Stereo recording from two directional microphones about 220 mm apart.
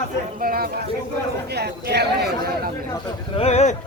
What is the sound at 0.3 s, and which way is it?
Speech, 40° right (ahead or behind).